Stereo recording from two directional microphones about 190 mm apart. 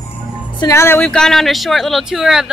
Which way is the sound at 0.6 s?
15° left (ahead or behind).